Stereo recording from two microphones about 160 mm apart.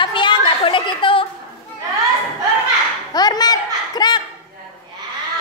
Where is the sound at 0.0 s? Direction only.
30° left (ahead or behind).